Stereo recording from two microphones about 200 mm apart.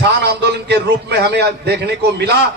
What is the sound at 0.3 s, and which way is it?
A man's voice, 55° right (ahead or behind).